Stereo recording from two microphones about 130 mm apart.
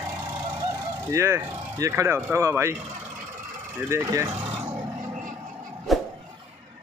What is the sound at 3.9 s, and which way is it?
Speech, 20° right (ahead or behind).